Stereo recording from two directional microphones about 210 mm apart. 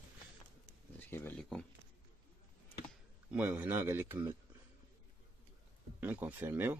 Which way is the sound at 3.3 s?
10° right (ahead or behind).